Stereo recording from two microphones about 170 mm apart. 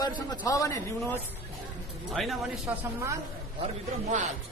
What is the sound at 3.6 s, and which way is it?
Speech, 45° right (ahead or behind).